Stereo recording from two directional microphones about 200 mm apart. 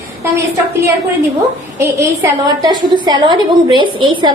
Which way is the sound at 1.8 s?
15° right (ahead or behind).